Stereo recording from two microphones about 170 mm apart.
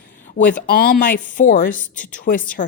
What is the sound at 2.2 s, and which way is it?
Speech, 55° left (ahead or behind).